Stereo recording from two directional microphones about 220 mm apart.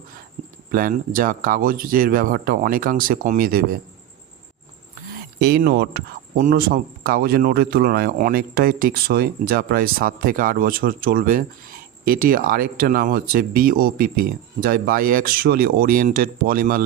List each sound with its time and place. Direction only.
0.4 s cricket: 35° right (ahead or behind)
0.7 s speech: 40° right (ahead or behind)
5.4 s speech: 45° right (ahead or behind)